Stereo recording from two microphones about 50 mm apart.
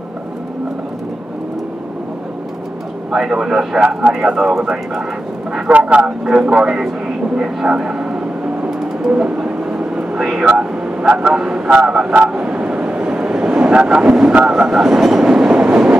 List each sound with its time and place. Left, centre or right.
3.1 s a man's voice: centre
4.6 s a man's voice: centre
5.7 s a man's voice: right
9.1 s vehicle: right
10.2 s a man's voice: centre
15.0 s train: centre